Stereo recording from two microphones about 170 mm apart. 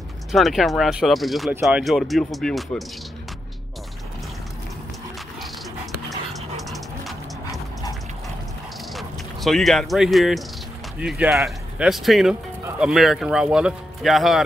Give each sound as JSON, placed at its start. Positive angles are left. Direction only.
{"t": 0.3, "sound": "speech", "side_deg": 0}
{"t": 1.5, "sound": "speech", "side_deg": -10}
{"t": 6.7, "sound": "music", "side_deg": 0}
{"t": 8.9, "sound": "speech", "side_deg": 0}